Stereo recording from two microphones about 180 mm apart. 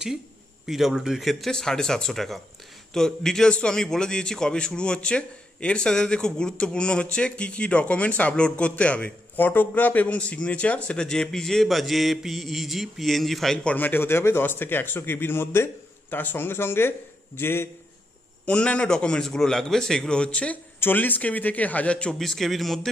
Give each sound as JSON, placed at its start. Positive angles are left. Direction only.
{"t": 0.7, "sound": "a man's voice", "side_deg": 0}